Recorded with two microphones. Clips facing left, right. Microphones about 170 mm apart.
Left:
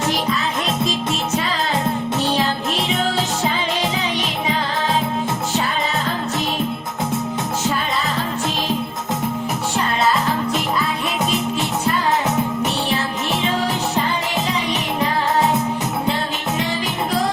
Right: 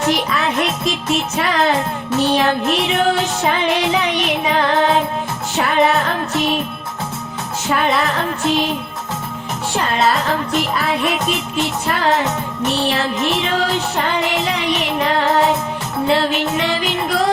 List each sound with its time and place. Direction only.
0.3 s music: 65° right (ahead or behind)
7.8 s music: 65° right (ahead or behind)
10.8 s music: 70° right (ahead or behind)